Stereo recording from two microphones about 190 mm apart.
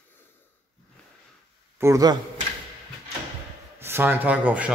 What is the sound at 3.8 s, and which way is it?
Speech, 10° right (ahead or behind).